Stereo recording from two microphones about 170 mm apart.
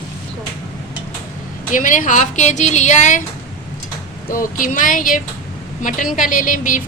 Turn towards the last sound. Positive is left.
turn(degrees=50)  # may be behind; listen again after turning